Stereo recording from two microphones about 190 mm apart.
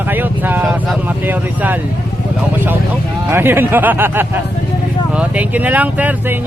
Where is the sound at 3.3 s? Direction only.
10° right (ahead or behind).